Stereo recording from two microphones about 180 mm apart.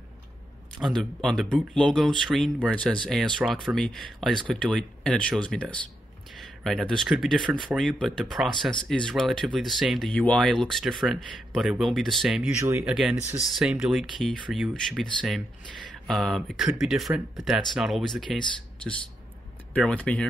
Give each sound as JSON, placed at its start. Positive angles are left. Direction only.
{"t": 0.7, "sound": "speech", "side_deg": 0}
{"t": 12.5, "sound": "speech", "side_deg": -15}
{"t": 12.9, "sound": "speech", "side_deg": 0}
{"t": 19.7, "sound": "speech", "side_deg": 5}